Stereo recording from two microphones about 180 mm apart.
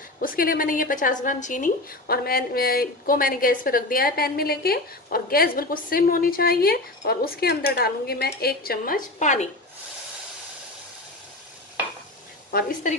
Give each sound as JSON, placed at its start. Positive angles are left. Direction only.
{"t": 0.2, "sound": "a woman's voice", "side_deg": 50}
{"t": 12.4, "sound": "a woman's voice", "side_deg": 55}